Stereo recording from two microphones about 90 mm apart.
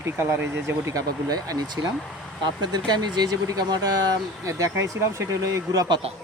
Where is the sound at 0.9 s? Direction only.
45° right (ahead or behind).